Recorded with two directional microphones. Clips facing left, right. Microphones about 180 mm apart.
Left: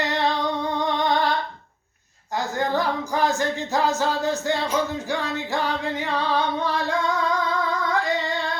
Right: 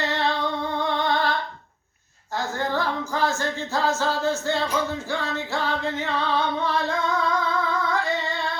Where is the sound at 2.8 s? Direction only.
15° left (ahead or behind).